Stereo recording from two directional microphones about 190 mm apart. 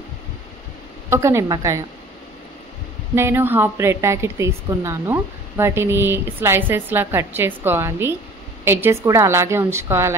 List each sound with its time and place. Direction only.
1.1 s a woman's voice: 15° right (ahead or behind)
3.2 s a woman's voice: 10° right (ahead or behind)